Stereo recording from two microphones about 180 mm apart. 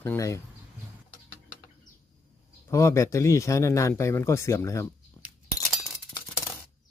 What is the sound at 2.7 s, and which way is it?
Speech, 15° left (ahead or behind).